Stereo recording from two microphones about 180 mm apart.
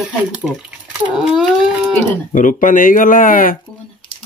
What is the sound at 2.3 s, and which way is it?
Speech, 45° left (ahead or behind).